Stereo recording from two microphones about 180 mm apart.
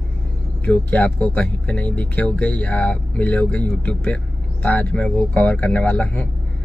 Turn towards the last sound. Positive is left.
turn(degrees=5)  # may be behind; listen again after turning